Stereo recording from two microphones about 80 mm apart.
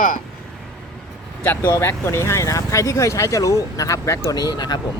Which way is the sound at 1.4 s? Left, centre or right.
Left.